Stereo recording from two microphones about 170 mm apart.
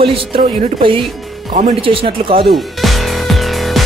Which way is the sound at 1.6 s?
35° right (ahead or behind).